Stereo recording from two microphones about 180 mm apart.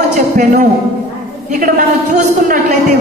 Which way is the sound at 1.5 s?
50° right (ahead or behind).